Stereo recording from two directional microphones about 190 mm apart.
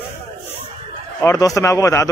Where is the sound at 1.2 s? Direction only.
15° left (ahead or behind).